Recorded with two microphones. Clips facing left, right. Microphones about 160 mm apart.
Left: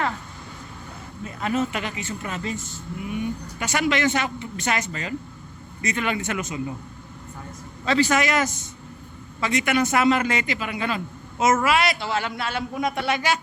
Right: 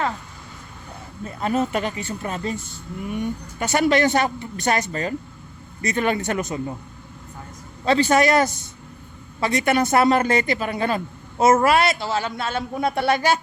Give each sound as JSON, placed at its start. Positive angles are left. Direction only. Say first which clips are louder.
{"t": 1.2, "sound": "a man's voice", "louder": "right 2 dB", "side_deg": -35}
{"t": 7.9, "sound": "a man's voice", "louder": "right 4 dB", "side_deg": -30}